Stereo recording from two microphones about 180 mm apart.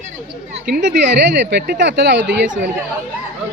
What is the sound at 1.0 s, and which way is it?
Speech, 75° right (ahead or behind).